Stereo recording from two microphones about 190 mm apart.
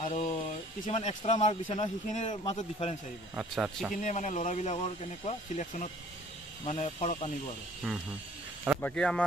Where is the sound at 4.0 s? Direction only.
40° left (ahead or behind).